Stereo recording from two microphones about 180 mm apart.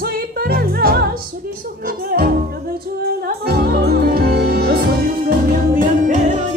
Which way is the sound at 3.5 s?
60° right (ahead or behind).